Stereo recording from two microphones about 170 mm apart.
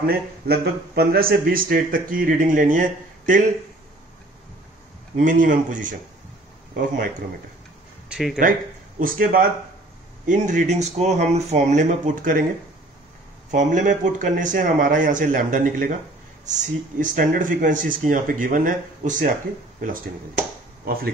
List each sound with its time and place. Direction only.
0.0 s a man's voice: 65° right (ahead or behind)
5.1 s speech: 50° right (ahead or behind)
8.1 s speech: centre (ahead or behind)
9.0 s a man's voice: 55° right (ahead or behind)
10.2 s speech: 45° right (ahead or behind)
13.5 s speech: 45° right (ahead or behind); by 21.1 s 60° right (ahead or behind)